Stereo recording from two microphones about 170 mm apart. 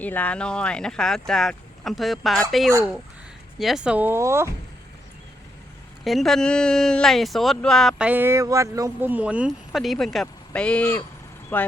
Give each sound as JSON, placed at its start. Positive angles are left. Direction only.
{"t": 0.0, "sound": "speech", "side_deg": 10}
{"t": 6.1, "sound": "speech", "side_deg": 0}